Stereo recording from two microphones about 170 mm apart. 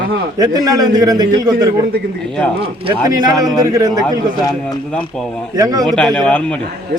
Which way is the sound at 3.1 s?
20° right (ahead or behind).